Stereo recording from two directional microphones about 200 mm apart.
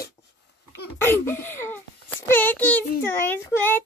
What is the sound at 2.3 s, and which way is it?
A child's voice, 10° left (ahead or behind).